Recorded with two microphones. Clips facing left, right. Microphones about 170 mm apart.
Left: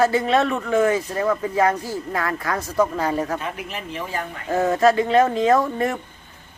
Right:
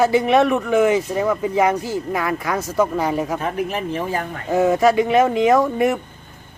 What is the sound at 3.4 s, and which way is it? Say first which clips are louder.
Speech: right 8 dB; 45° right (ahead or behind).